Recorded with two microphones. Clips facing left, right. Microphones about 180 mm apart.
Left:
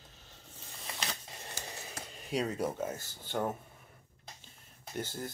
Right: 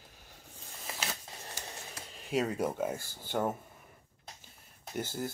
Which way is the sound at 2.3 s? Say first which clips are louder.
Right 2 dB; 5° right (ahead or behind).